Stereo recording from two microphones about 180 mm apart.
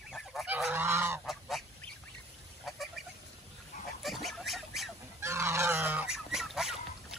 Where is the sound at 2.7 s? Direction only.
Centre (ahead or behind).